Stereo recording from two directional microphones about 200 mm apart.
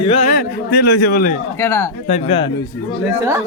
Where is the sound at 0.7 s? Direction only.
50° left (ahead or behind).